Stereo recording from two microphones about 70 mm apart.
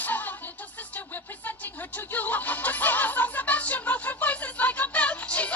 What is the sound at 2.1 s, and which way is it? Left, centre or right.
Music, left.